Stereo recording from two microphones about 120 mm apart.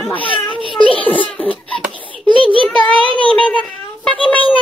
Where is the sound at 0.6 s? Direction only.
45° right (ahead or behind).